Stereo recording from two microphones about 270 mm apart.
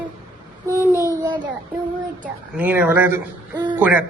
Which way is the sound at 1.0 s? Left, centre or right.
Centre.